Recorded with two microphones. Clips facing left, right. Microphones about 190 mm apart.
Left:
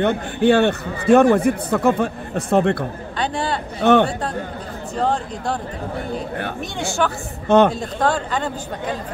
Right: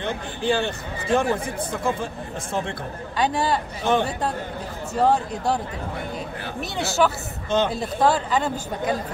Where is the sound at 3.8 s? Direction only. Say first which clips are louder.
Left 9 dB; 65° left (ahead or behind).